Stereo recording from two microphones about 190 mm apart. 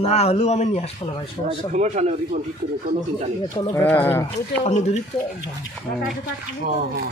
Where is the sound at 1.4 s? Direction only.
40° right (ahead or behind).